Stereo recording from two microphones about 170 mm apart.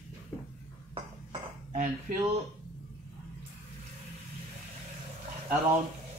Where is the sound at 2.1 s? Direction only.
50° right (ahead or behind).